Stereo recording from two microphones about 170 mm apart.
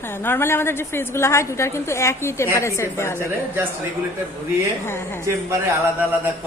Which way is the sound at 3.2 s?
15° right (ahead or behind).